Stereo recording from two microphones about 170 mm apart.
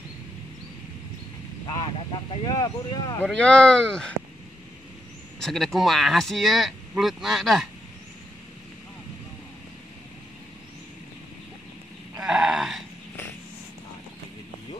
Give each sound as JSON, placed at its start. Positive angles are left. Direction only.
{"t": 2.3, "sound": "speech", "side_deg": 25}
{"t": 3.2, "sound": "speech", "side_deg": 5}
{"t": 5.4, "sound": "speech", "side_deg": 0}
{"t": 12.2, "sound": "a sound", "side_deg": -5}